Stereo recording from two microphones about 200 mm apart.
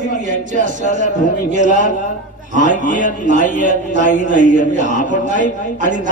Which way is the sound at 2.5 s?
40° left (ahead or behind).